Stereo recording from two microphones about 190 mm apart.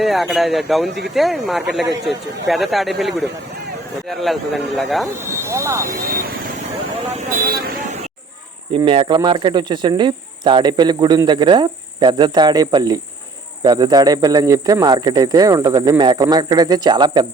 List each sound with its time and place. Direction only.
0.0 s a man's voice: centre (ahead or behind)
5.5 s speech: 15° right (ahead or behind)
6.1 s vehicle: 50° right (ahead or behind)
7.2 s speech: 50° right (ahead or behind)
8.7 s speech: 25° right (ahead or behind)